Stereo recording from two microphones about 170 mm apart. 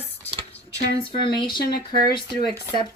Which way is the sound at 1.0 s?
30° left (ahead or behind).